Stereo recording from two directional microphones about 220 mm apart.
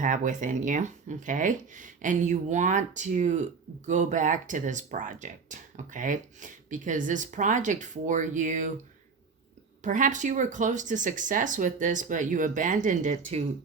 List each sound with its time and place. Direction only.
0.0 s speech: 35° right (ahead or behind)
9.8 s speech: 35° right (ahead or behind)